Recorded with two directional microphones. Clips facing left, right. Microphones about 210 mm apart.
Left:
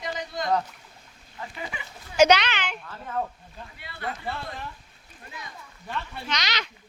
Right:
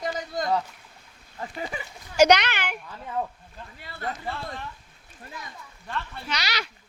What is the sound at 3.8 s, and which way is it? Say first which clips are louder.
Speech: right 1 dB; 40° right (ahead or behind).